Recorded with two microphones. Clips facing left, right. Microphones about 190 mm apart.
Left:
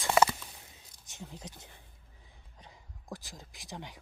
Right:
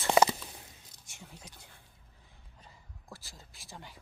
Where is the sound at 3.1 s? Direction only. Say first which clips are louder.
Left 7 dB; 15° left (ahead or behind).